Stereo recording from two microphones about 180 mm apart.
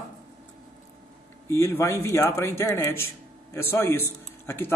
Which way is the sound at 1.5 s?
15° left (ahead or behind).